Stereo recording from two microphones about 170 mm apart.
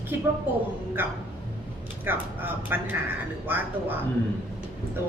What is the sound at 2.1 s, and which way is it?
Speech, 10° right (ahead or behind).